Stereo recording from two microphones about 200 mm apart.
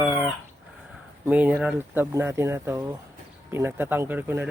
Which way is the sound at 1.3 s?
10° right (ahead or behind).